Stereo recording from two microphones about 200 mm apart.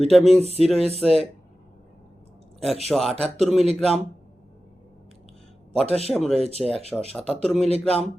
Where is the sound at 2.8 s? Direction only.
Centre (ahead or behind).